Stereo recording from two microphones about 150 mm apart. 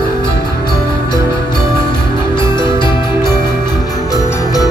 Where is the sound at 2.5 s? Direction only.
30° left (ahead or behind).